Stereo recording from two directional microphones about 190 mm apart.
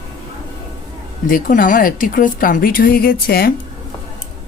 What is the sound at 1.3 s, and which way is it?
A woman's voice, 45° left (ahead or behind).